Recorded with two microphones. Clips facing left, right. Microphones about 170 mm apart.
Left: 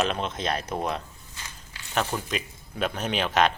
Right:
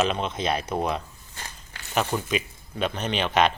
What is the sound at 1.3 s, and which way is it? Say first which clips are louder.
Walk: right 4 dB; 55° right (ahead or behind).